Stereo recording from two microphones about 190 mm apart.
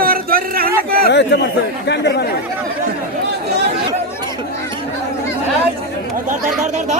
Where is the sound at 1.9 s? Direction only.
60° left (ahead or behind).